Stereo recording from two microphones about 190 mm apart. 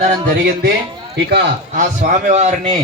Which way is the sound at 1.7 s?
35° right (ahead or behind).